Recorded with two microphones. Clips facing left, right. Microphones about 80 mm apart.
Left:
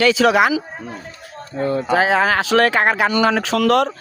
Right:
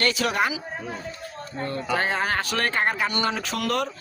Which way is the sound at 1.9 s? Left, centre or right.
Left.